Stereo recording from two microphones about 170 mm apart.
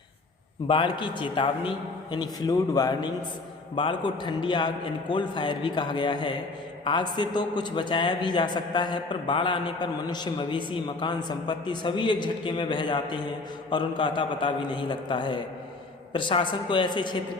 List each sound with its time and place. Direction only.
0.7 s a man's voice: 30° left (ahead or behind)